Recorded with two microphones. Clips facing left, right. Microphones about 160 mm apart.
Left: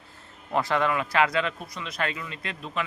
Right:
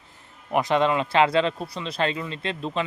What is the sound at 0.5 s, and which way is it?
Speech, 20° right (ahead or behind).